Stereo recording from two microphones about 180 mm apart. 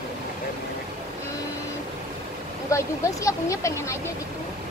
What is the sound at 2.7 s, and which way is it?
A woman's voice, 15° left (ahead or behind).